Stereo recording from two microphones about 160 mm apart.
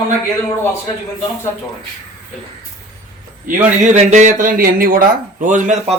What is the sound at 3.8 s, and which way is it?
Speech, 50° right (ahead or behind).